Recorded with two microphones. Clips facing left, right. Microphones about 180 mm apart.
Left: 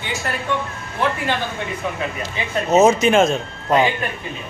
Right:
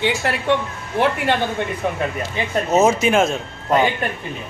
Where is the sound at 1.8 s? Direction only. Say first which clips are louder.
Right 3 dB; 55° right (ahead or behind).